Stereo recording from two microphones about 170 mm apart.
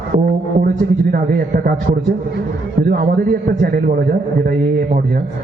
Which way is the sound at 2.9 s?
60° right (ahead or behind).